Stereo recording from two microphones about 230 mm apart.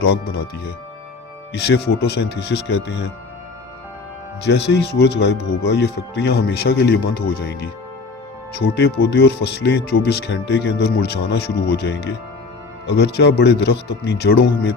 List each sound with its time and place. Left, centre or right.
0.0 s speech: left
4.4 s speech: left